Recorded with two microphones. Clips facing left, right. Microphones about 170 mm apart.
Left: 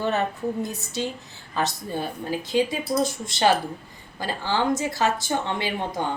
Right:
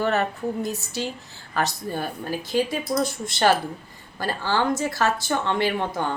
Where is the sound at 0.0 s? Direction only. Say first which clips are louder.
Right 2 dB; 20° left (ahead or behind).